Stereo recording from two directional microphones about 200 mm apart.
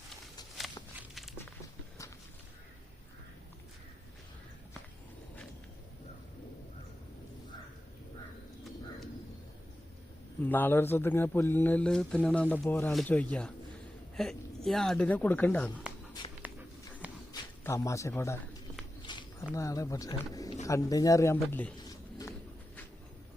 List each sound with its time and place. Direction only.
0.9 s walk: centre (ahead or behind)
10.4 s a man's voice: 10° left (ahead or behind)
16.4 s dog: 10° right (ahead or behind)
17.3 s a man's voice: 15° left (ahead or behind)
19.0 s a sound: 20° left (ahead or behind)
19.5 s speech: 15° left (ahead or behind)
21.8 s a sound: 15° left (ahead or behind)